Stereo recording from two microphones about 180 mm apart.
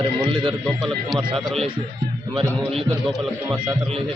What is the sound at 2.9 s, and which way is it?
Speech, centre (ahead or behind).